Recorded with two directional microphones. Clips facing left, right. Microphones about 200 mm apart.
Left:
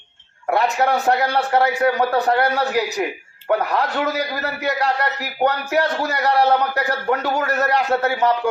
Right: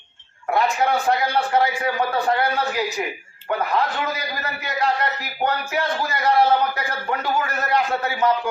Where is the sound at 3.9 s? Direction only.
70° left (ahead or behind).